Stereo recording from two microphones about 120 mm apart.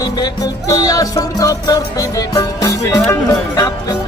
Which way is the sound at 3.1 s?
30° left (ahead or behind).